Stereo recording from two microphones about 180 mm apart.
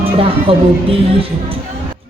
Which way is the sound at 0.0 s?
30° right (ahead or behind).